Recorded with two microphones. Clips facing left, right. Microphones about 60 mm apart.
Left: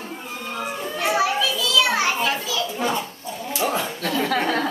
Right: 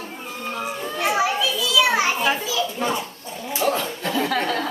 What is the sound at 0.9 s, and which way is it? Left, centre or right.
A child's voice, centre.